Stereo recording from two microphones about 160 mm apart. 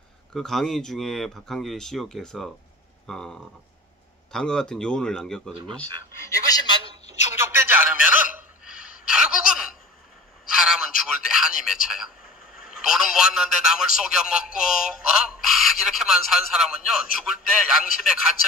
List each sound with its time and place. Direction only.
0.3 s speech: centre (ahead or behind)
6.5 s a woman's voice: 20° left (ahead or behind)
7.3 s a sound: 15° right (ahead or behind)
8.6 s gasp: 5° right (ahead or behind)
10.5 s a man's voice: centre (ahead or behind)